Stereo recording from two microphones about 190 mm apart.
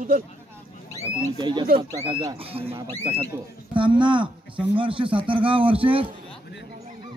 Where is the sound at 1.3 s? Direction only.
25° right (ahead or behind).